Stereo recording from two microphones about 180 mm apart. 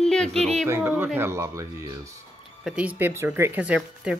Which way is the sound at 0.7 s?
10° right (ahead or behind).